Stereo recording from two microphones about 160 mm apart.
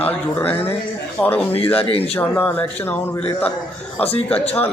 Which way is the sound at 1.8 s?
40° left (ahead or behind).